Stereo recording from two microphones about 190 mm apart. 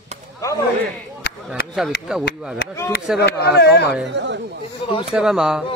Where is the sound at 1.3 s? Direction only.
60° left (ahead or behind).